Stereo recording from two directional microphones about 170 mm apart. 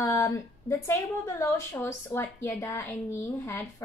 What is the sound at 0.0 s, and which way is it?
A woman's voice, 15° left (ahead or behind).